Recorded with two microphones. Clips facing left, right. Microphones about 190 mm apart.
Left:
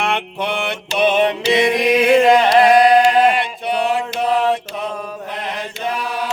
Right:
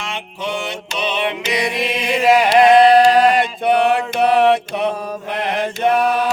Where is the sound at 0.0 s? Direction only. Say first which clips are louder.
Left 5 dB; 60° left (ahead or behind).